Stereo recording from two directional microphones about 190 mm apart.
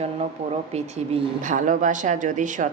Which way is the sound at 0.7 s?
35° right (ahead or behind).